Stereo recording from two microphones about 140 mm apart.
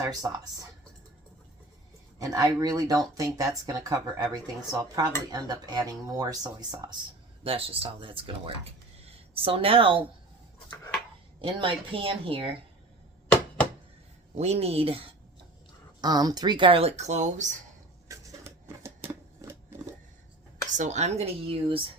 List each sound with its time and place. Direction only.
0.0 s speech: 25° right (ahead or behind)
2.1 s speech: 30° right (ahead or behind)
7.4 s speech: 40° right (ahead or behind)
11.3 s speech: 40° right (ahead or behind)
14.3 s speech: 50° right (ahead or behind)
16.0 s speech: 30° right (ahead or behind); by 17.5 s 60° right (ahead or behind)
18.1 s a sound: 20° right (ahead or behind)
20.7 s speech: 55° right (ahead or behind)